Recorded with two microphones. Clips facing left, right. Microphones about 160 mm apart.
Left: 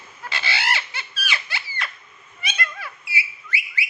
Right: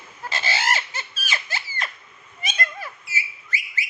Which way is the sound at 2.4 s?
40° right (ahead or behind).